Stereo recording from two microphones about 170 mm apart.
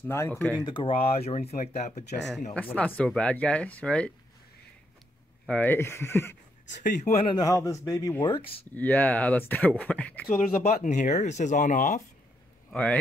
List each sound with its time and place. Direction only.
0.0 s speech: 15° left (ahead or behind)
0.7 s speech: 30° left (ahead or behind)
2.5 s speech: 10° left (ahead or behind)
5.5 s speech: 10° left (ahead or behind)
6.8 s speech: 50° left (ahead or behind)
7.2 s speech: 20° left (ahead or behind)
8.7 s speech: 10° left (ahead or behind)
10.6 s speech: 45° left (ahead or behind)
12.7 s speech: 5° left (ahead or behind)